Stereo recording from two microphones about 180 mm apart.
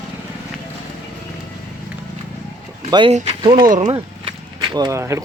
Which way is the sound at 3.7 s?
35° right (ahead or behind).